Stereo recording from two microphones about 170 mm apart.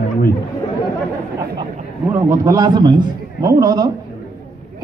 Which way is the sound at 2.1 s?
20° right (ahead or behind).